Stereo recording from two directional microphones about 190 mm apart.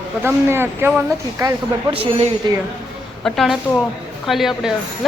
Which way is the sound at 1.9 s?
30° right (ahead or behind).